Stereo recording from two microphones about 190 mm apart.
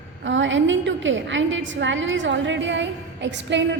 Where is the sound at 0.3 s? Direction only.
75° right (ahead or behind).